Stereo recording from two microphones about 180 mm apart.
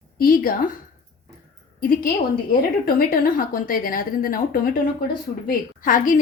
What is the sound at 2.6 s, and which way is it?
A woman's voice, 55° left (ahead or behind).